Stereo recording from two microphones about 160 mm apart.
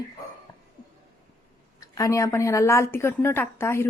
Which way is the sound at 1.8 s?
20° left (ahead or behind).